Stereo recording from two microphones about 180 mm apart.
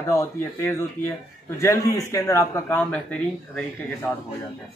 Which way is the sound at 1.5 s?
15° left (ahead or behind).